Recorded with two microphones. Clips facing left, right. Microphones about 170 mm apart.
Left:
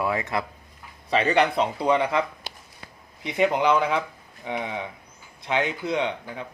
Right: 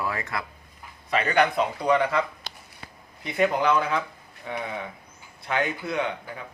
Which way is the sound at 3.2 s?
20° left (ahead or behind).